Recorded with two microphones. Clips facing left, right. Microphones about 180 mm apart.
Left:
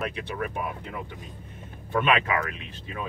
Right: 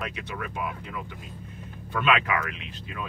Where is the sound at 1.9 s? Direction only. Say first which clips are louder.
Left 1 dB; 25° left (ahead or behind).